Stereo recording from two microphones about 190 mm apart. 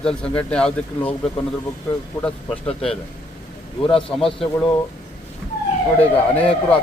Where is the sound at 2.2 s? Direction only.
5° left (ahead or behind).